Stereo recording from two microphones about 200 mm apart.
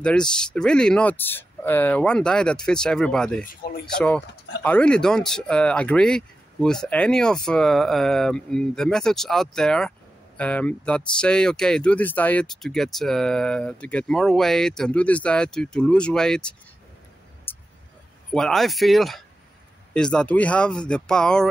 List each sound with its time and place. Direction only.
0.0 s speech: 5° left (ahead or behind)
3.4 s speech: 50° left (ahead or behind)
4.6 s speech: 5° left (ahead or behind)
17.5 s vehicle: 10° left (ahead or behind)
18.3 s speech: centre (ahead or behind)